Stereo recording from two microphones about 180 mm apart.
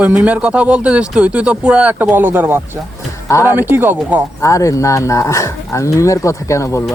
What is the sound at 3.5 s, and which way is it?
Speech, 10° right (ahead or behind).